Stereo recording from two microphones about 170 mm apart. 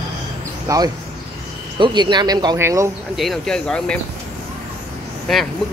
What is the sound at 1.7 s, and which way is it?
Speech, 25° right (ahead or behind).